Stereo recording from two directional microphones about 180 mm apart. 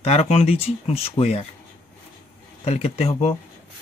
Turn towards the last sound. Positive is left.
turn(degrees=35)  # may be behind; listen again after turning